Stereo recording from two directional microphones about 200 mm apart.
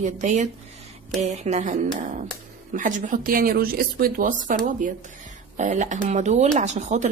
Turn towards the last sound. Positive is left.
turn(degrees=-35)  # may be behind; listen again after turning